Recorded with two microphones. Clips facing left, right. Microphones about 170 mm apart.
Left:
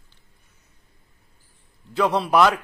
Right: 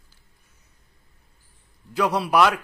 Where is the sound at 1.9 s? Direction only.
10° right (ahead or behind).